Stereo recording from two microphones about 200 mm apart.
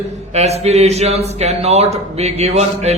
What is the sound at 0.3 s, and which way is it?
A man's voice, 30° right (ahead or behind).